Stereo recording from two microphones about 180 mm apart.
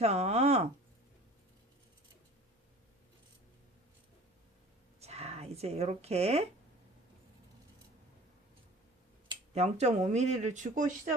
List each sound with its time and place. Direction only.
0.0 s speech: 35° right (ahead or behind)
4.9 s a sound: 35° right (ahead or behind)
9.6 s speech: 40° right (ahead or behind)